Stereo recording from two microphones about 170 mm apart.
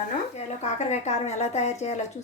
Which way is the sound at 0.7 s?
40° left (ahead or behind).